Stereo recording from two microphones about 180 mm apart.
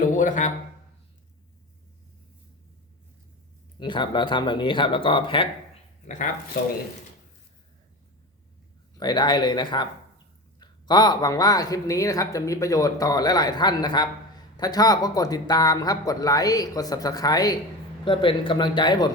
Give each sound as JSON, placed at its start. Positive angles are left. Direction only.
{"t": 0.0, "sound": "a man's voice", "side_deg": 45}
{"t": 3.8, "sound": "speech", "side_deg": 25}
{"t": 9.0, "sound": "speech", "side_deg": 25}